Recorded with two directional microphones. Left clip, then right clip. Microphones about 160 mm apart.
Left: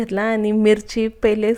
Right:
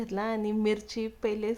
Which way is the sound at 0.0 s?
25° left (ahead or behind).